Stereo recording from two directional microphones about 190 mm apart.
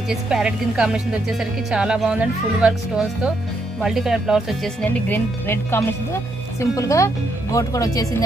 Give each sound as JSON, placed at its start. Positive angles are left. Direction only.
{"t": 0.1, "sound": "speech", "side_deg": -5}
{"t": 5.0, "sound": "speech", "side_deg": 10}